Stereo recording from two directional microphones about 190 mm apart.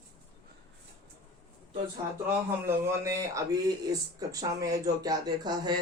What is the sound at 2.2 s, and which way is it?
Speech, 10° right (ahead or behind).